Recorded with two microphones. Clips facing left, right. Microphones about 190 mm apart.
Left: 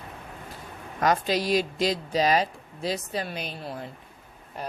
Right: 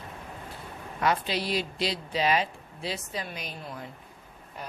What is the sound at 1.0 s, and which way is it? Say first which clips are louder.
Speech: left 4 dB; 45° left (ahead or behind).